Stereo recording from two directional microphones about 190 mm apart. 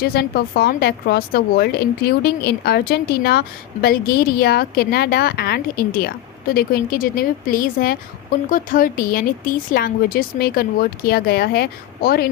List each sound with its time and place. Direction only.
0.0 s a woman's voice: 55° left (ahead or behind)